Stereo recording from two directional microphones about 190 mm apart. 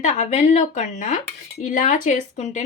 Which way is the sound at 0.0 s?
40° left (ahead or behind).